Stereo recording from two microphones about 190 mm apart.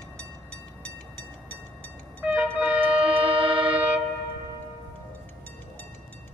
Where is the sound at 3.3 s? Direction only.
30° right (ahead or behind).